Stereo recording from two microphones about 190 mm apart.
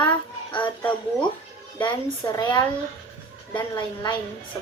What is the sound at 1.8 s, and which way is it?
A woman's voice, 25° left (ahead or behind).